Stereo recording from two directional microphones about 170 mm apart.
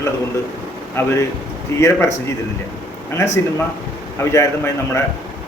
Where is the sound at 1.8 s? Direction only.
15° left (ahead or behind).